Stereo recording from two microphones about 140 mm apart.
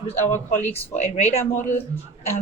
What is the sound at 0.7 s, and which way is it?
Speech, 50° left (ahead or behind).